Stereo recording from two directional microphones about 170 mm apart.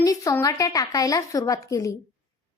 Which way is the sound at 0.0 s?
20° left (ahead or behind).